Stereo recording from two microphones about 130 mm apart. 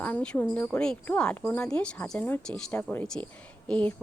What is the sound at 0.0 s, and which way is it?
Speech, 10° left (ahead or behind).